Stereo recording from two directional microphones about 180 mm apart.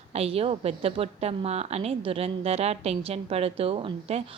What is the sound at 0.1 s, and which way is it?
Speech, 35° right (ahead or behind).